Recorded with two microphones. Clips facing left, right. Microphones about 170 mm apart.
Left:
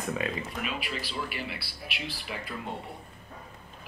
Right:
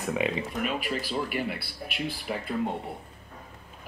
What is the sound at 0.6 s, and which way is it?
Speech, 45° right (ahead or behind).